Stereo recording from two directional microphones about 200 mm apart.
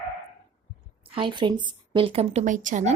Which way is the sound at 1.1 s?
25° right (ahead or behind).